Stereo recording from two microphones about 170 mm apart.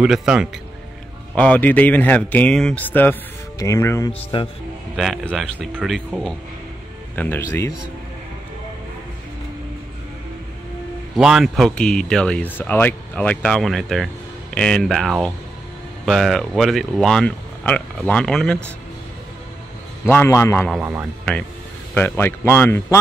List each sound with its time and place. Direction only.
0.0 s speech: 5° right (ahead or behind)
1.3 s speech: 5° left (ahead or behind)
4.1 s speech: 30° left (ahead or behind)
4.9 s speech: centre (ahead or behind)
7.2 s speech: 15° left (ahead or behind)
11.1 s speech: 5° right (ahead or behind)
20.1 s speech: 15° left (ahead or behind)
21.9 s speech: 10° left (ahead or behind)